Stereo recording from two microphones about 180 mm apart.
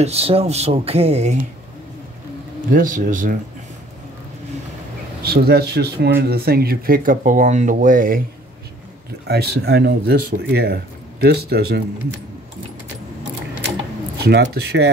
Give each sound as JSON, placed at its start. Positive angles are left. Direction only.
{"t": 0.0, "sound": "speech", "side_deg": -35}
{"t": 2.7, "sound": "speech", "side_deg": -45}
{"t": 5.2, "sound": "speech", "side_deg": -60}
{"t": 9.3, "sound": "speech", "side_deg": -65}
{"t": 14.2, "sound": "speech", "side_deg": -65}